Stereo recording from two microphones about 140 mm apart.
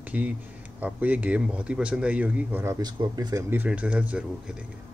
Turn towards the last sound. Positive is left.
turn(degrees=-10)  # may be behind; listen again after turning